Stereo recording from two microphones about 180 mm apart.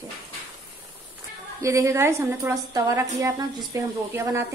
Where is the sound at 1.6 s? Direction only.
15° right (ahead or behind).